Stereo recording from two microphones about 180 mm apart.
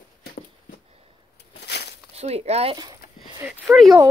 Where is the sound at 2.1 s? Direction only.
35° right (ahead or behind).